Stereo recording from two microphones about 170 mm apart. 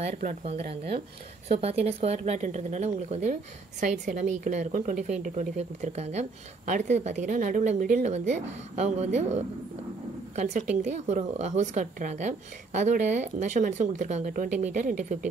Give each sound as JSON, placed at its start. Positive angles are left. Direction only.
{"t": 0.0, "sound": "a woman's voice", "side_deg": -40}